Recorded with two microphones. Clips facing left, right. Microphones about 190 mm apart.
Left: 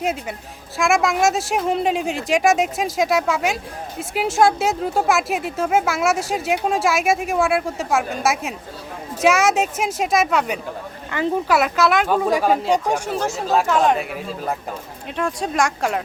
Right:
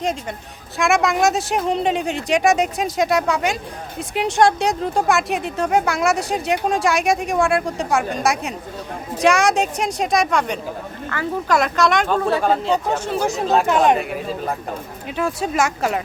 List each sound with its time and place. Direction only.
0.8 s speech: centre (ahead or behind)
11.1 s speech: 15° left (ahead or behind)
11.4 s speech: 5° left (ahead or behind)
13.1 s speech: 15° right (ahead or behind)
14.0 s speech: centre (ahead or behind)